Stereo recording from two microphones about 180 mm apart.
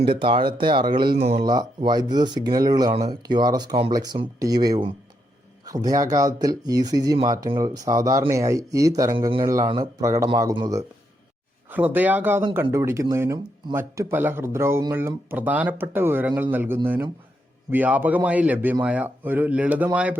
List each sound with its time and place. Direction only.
0.1 s speech: 30° right (ahead or behind)
1.2 s speech: 40° right (ahead or behind)
1.5 s speech: 20° right (ahead or behind)
11.7 s speech: 10° right (ahead or behind)